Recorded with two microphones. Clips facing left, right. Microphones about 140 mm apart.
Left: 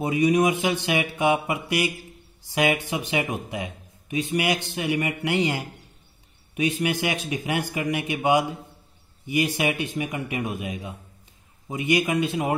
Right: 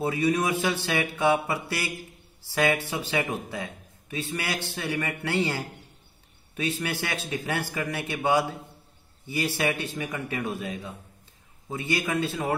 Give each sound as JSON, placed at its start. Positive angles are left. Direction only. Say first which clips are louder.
{"t": 0.0, "sound": "speech", "louder": "left 5 dB", "side_deg": 15}